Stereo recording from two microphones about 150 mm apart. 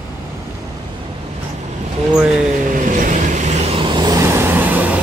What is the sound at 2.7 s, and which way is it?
Vehicle, 60° right (ahead or behind).